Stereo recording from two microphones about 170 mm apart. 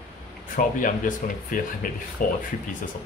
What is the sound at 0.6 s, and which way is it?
Speech, 50° left (ahead or behind).